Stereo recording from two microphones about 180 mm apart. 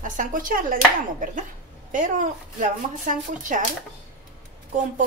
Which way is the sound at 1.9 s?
45° right (ahead or behind).